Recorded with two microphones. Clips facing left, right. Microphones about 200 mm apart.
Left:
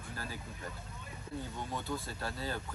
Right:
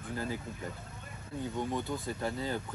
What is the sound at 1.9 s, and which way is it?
Speech, 20° right (ahead or behind).